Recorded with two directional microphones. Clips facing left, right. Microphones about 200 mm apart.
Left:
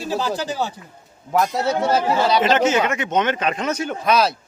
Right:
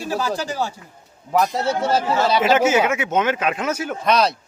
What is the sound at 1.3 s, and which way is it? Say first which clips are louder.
A man's voice: even; centre (ahead or behind).